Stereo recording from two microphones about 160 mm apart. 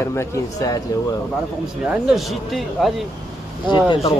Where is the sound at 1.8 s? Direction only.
5° right (ahead or behind).